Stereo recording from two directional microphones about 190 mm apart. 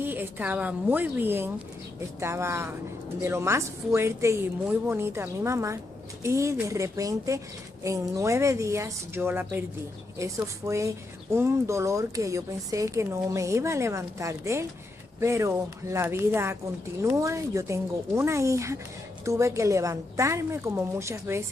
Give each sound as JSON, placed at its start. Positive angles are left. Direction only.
{"t": 0.0, "sound": "speech", "side_deg": -10}